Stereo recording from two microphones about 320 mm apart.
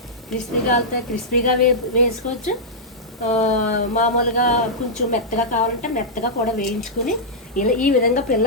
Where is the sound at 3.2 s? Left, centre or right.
Left.